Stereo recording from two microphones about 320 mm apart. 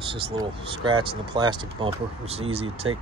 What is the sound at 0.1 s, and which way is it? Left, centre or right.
Speech, centre.